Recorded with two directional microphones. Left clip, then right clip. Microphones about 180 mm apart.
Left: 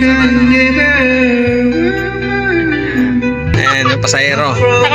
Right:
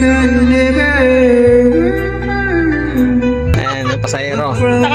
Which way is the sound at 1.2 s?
35° right (ahead or behind).